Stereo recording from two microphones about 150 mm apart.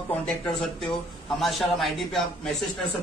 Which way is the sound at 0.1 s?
5° left (ahead or behind).